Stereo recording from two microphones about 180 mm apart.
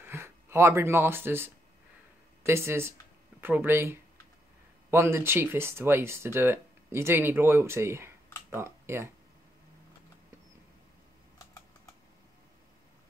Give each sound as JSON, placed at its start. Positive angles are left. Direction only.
{"t": 0.0, "sound": "speech", "side_deg": -15}